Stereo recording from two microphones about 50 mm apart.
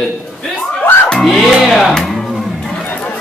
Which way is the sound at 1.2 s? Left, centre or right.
Centre.